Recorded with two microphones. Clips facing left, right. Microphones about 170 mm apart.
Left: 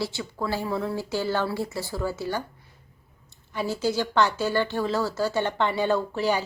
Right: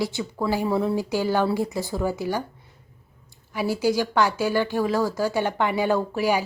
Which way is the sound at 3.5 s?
10° right (ahead or behind).